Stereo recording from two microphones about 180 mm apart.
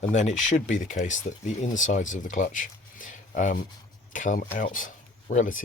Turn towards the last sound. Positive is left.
turn(degrees=45)  # may be behind; listen again after turning